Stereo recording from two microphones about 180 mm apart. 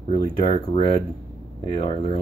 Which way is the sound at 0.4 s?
25° left (ahead or behind).